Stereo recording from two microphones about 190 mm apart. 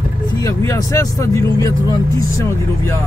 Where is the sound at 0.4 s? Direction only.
15° left (ahead or behind).